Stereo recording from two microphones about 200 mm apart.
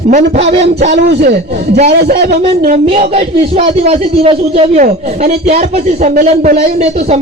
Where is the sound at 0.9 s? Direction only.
55° right (ahead or behind).